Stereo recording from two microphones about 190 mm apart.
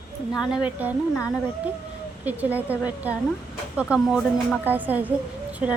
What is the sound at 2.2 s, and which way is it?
A woman's voice, 10° right (ahead or behind).